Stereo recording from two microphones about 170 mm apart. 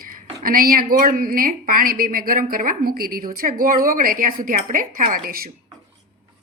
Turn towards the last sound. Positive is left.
turn(degrees=-60)  # may be behind; listen again after turning